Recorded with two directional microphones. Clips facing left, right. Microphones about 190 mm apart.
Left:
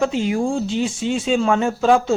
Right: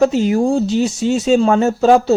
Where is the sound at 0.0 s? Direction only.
40° right (ahead or behind).